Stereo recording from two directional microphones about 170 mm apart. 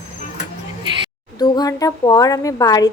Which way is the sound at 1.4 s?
20° left (ahead or behind).